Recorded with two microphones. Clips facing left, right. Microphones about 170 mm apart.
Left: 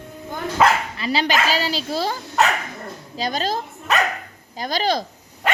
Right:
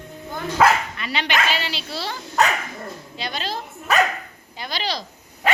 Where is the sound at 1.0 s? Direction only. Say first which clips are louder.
Left 3 dB; 35° left (ahead or behind).